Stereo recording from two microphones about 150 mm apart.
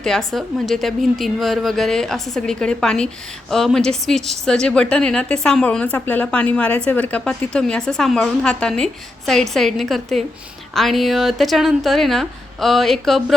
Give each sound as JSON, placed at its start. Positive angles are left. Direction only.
{"t": 0.0, "sound": "a woman's voice", "side_deg": 0}